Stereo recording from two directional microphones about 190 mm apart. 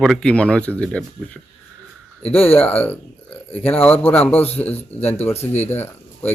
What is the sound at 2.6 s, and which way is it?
Speech, 10° left (ahead or behind).